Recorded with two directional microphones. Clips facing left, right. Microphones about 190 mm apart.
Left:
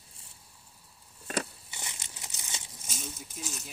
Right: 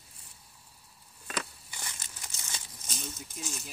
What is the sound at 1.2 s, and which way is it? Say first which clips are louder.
Biting: left 4 dB; 40° left (ahead or behind).